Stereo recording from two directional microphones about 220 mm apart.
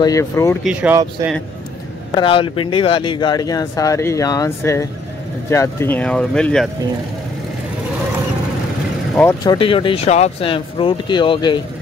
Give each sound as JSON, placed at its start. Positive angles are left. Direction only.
{"t": 0.0, "sound": "speech", "side_deg": 15}
{"t": 0.7, "sound": "speech", "side_deg": -5}
{"t": 2.1, "sound": "speech", "side_deg": 25}
{"t": 9.1, "sound": "speech", "side_deg": 10}